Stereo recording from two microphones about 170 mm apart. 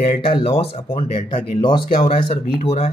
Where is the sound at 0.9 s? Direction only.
40° left (ahead or behind).